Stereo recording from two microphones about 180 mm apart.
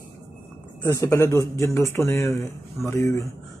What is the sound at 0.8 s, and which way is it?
Speech, 15° left (ahead or behind).